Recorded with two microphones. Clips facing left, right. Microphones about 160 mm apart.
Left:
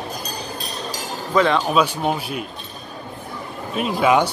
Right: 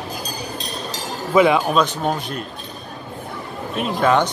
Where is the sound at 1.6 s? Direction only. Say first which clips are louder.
Even; 10° left (ahead or behind).